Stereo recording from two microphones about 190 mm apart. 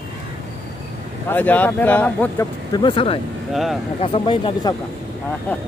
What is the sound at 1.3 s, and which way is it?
Speech, 10° left (ahead or behind).